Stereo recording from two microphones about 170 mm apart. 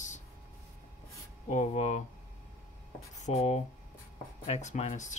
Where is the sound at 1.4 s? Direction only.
40° left (ahead or behind).